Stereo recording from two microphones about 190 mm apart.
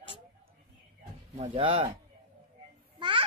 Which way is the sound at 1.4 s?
30° right (ahead or behind).